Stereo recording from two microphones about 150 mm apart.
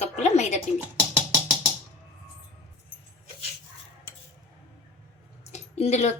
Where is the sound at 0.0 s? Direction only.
50° left (ahead or behind).